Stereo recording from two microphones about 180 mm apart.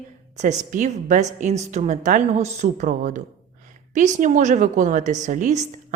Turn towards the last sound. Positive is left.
turn(degrees=-45)  # may be behind; listen again after turning